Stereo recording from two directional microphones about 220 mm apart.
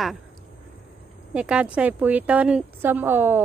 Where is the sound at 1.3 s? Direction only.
5° right (ahead or behind).